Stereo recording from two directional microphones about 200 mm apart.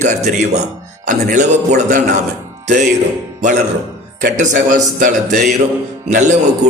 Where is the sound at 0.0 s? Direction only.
35° right (ahead or behind).